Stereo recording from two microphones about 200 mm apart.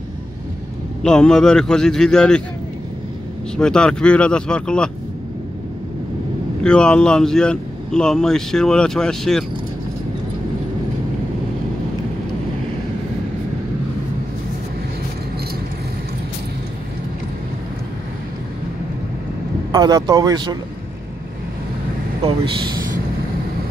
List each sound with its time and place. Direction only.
1.0 s speech: 5° left (ahead or behind)
3.5 s speech: 5° left (ahead or behind)
6.6 s speech: 5° left (ahead or behind)
19.7 s speech: 20° right (ahead or behind)